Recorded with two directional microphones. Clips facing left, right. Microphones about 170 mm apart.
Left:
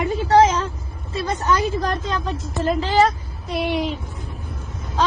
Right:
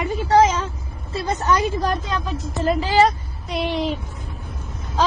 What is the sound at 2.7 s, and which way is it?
A woman's voice, centre (ahead or behind).